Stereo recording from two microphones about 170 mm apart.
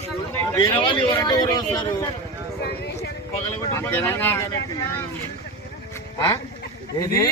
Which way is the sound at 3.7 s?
15° left (ahead or behind).